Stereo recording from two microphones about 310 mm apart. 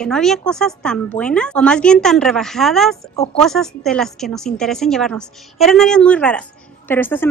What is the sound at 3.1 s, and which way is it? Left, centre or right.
Speech, centre.